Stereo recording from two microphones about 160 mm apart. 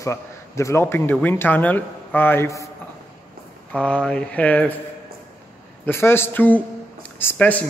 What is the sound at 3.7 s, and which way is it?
A man's voice, 5° left (ahead or behind).